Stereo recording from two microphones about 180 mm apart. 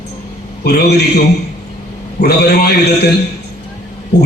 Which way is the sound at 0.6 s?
65° left (ahead or behind).